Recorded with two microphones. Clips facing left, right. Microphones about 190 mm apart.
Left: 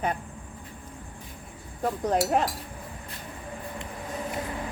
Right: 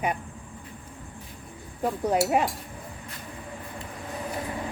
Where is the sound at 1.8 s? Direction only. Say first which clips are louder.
Right 1 dB; 10° right (ahead or behind).